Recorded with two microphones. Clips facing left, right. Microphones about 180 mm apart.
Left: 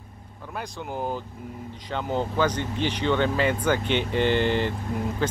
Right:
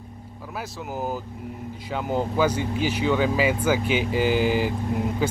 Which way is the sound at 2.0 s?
10° right (ahead or behind).